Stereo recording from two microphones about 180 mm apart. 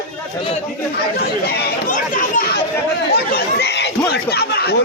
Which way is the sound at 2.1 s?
55° left (ahead or behind).